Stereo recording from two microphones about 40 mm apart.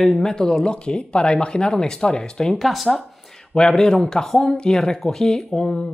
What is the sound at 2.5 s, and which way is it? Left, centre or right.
Speech, centre.